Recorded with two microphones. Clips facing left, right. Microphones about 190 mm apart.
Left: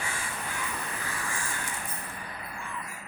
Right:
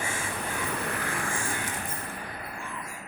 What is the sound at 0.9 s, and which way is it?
Vehicle, 70° right (ahead or behind).